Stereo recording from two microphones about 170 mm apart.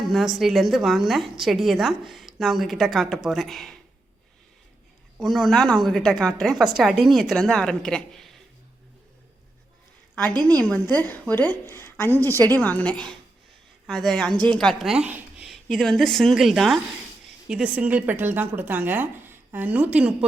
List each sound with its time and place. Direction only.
0.1 s a woman's voice: centre (ahead or behind)
5.2 s a woman's voice: centre (ahead or behind)
10.6 s a woman's voice: 5° left (ahead or behind)
15.7 s a woman's voice: 5° left (ahead or behind)